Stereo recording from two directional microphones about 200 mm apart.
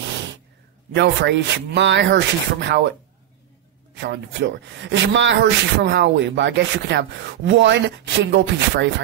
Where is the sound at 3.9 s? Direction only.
55° right (ahead or behind).